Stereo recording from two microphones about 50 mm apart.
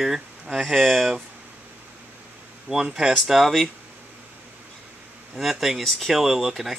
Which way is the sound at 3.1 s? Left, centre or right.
Centre.